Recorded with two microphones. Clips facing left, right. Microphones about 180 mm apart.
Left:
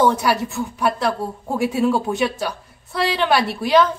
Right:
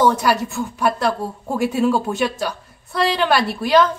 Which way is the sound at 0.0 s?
Centre (ahead or behind).